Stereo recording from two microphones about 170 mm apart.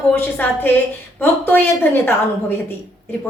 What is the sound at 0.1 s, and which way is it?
A woman's voice, 10° left (ahead or behind).